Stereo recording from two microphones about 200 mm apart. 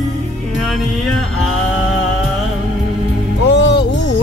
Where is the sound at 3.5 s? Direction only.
60° left (ahead or behind).